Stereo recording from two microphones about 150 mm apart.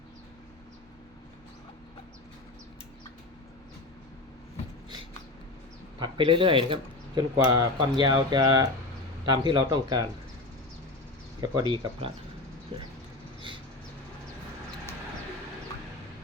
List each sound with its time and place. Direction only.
6.0 s speech: 35° right (ahead or behind)
11.3 s speech: 30° right (ahead or behind)